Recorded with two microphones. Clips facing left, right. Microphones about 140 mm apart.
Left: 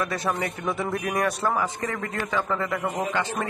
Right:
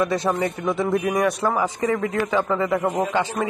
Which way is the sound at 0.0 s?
20° right (ahead or behind).